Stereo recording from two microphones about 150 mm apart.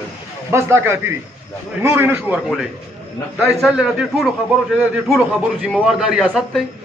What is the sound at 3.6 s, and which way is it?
A man's voice, 5° right (ahead or behind).